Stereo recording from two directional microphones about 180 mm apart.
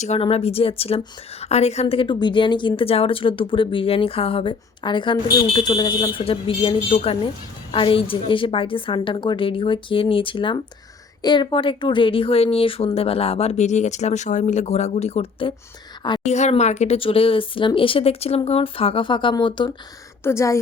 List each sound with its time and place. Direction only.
0.0 s a woman's voice: 35° left (ahead or behind)
20.2 s speech: 15° left (ahead or behind)